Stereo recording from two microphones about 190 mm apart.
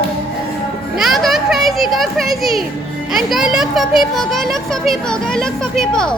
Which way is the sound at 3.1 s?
Centre (ahead or behind).